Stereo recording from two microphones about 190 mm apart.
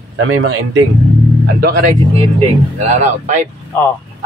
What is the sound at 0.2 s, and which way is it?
Speech, 90° right.